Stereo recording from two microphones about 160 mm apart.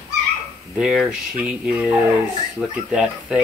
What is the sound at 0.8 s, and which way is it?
Speech, 5° right (ahead or behind).